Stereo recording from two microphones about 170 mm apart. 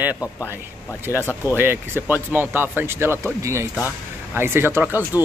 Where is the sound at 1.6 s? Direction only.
10° right (ahead or behind).